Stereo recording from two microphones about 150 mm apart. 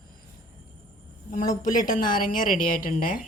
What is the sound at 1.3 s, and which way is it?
Speech, 60° left (ahead or behind).